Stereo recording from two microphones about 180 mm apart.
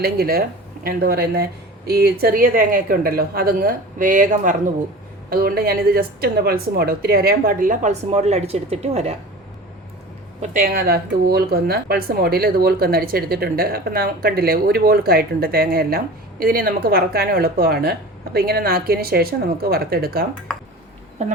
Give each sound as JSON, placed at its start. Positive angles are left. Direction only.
{"t": 0.0, "sound": "a woman's voice", "side_deg": -60}
{"t": 5.3, "sound": "speech", "side_deg": -55}
{"t": 10.4, "sound": "speech", "side_deg": -50}
{"t": 21.2, "sound": "speech", "side_deg": -40}